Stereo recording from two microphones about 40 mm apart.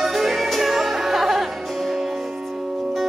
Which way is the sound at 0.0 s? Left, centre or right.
Centre.